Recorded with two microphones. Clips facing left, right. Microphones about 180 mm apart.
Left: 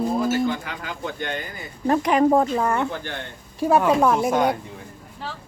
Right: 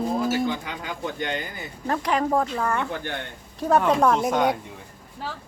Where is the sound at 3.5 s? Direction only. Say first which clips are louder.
Left 2 dB; 10° left (ahead or behind).